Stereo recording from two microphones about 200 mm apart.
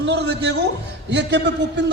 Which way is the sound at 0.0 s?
60° right (ahead or behind).